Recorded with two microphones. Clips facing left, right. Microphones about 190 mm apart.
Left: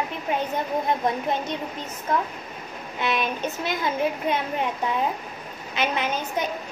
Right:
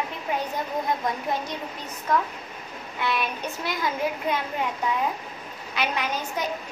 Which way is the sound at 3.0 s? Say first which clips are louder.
Left 2 dB; 20° left (ahead or behind).